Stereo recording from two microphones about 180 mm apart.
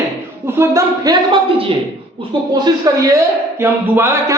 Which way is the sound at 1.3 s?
30° right (ahead or behind).